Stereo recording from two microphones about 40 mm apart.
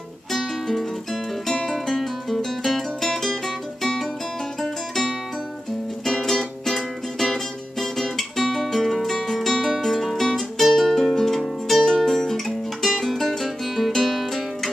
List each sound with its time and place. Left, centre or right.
0.3 s music: centre
1.5 s music: centre
1.9 s music: centre
4.6 s music: centre
7.8 s guitar: centre
10.7 s music: centre